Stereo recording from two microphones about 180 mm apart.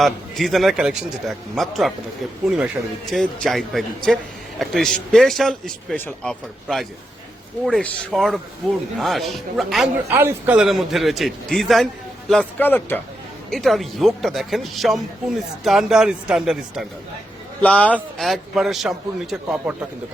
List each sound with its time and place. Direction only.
0.0 s a man's voice: centre (ahead or behind)
3.1 s a man's voice: centre (ahead or behind)
17.6 s a man's voice: 10° left (ahead or behind)